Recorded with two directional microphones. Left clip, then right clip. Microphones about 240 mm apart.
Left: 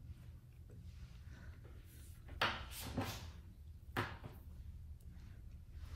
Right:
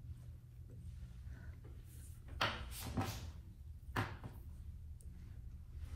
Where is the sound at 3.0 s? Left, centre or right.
Right.